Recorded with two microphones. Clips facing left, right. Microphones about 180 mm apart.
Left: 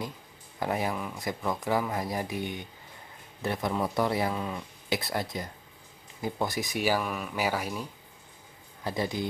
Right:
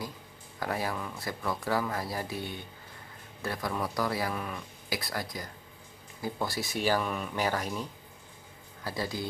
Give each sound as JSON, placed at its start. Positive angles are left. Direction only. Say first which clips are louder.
{"t": 0.6, "sound": "speech", "louder": "left 3 dB", "side_deg": 20}
{"t": 8.8, "sound": "speech", "louder": "left 4 dB", "side_deg": 20}